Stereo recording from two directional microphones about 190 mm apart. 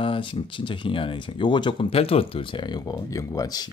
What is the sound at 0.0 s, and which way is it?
Speech, 25° left (ahead or behind).